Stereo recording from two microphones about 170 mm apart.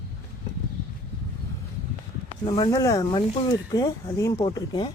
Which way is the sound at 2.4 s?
20° left (ahead or behind).